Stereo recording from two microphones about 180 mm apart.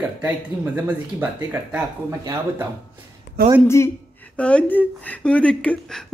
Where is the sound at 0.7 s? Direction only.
10° right (ahead or behind).